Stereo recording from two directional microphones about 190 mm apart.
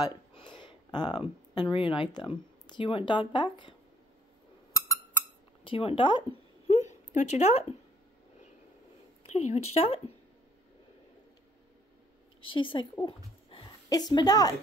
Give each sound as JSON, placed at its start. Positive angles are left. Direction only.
{"t": 0.0, "sound": "speech", "side_deg": 25}
{"t": 4.7, "sound": "a sound", "side_deg": 15}
{"t": 6.7, "sound": "a woman's voice", "side_deg": 35}
{"t": 9.3, "sound": "speech", "side_deg": 35}
{"t": 12.4, "sound": "a woman's voice", "side_deg": 25}